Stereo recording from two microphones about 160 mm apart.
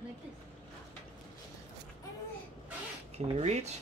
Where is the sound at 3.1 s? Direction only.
45° right (ahead or behind).